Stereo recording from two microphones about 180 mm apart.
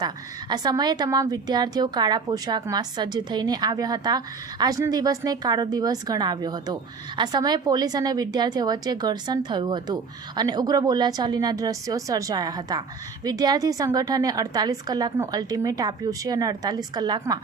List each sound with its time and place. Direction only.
0.0 s a woman's voice: 20° right (ahead or behind)